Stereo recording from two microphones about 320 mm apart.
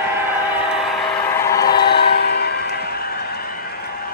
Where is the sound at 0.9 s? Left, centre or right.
Centre.